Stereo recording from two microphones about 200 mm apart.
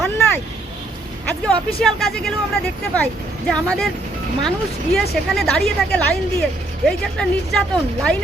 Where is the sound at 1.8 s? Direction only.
Centre (ahead or behind).